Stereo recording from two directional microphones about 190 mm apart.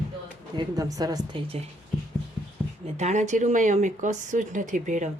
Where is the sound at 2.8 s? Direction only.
35° right (ahead or behind).